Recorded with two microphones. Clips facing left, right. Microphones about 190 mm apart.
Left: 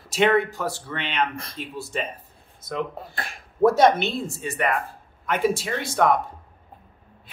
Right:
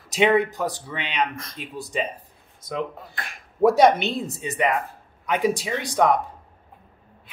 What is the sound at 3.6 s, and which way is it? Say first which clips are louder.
Speech: right 1 dB; 15° right (ahead or behind).